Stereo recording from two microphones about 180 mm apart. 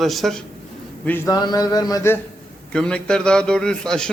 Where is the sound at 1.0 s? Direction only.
10° left (ahead or behind).